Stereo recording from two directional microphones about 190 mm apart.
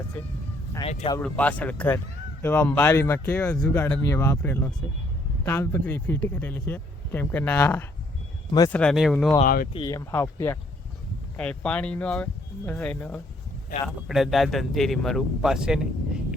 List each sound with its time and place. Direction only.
0.8 s speech: 30° left (ahead or behind)
1.2 s speech: 5° left (ahead or behind)
9.4 s speech: 50° left (ahead or behind)
9.7 s speech: 20° left (ahead or behind); by 16.2 s 5° right (ahead or behind)